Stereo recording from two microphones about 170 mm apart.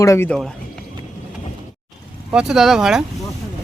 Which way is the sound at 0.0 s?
15° left (ahead or behind).